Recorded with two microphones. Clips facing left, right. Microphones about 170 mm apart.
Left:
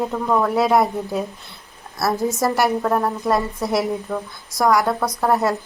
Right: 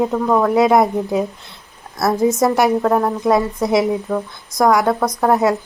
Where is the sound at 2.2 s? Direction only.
Centre (ahead or behind).